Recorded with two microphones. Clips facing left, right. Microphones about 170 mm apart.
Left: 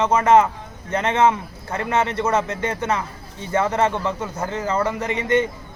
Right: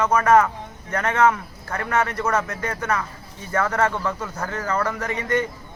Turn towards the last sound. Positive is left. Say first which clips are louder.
# left 4 dB
turn(degrees=20)  # may be behind; listen again after turning